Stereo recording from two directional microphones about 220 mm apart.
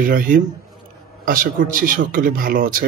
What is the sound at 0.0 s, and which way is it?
A man's voice, 40° right (ahead or behind).